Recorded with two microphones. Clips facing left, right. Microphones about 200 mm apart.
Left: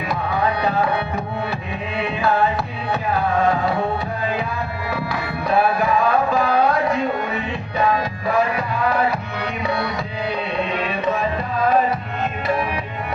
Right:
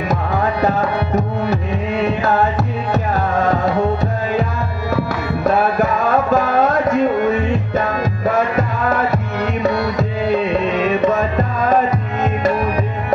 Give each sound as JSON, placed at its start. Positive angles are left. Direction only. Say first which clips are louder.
{"t": 0.1, "sound": "tabla", "louder": "right 1 dB", "side_deg": -45}
{"t": 2.0, "sound": "music", "louder": "right 1 dB", "side_deg": -45}
{"t": 4.9, "sound": "music", "louder": "right 7 dB", "side_deg": -45}